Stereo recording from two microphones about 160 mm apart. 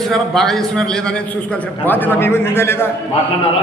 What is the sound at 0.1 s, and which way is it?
Speech, centre (ahead or behind).